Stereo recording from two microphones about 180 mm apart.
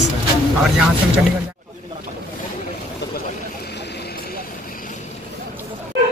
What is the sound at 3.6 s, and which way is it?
Vehicle, 70° left (ahead or behind).